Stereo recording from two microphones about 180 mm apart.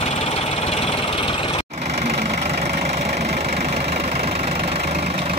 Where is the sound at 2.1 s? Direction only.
60° right (ahead or behind).